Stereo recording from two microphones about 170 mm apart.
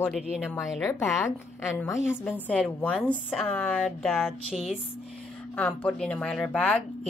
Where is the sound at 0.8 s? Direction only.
15° left (ahead or behind).